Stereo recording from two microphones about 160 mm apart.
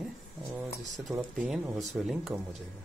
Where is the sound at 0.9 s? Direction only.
Centre (ahead or behind).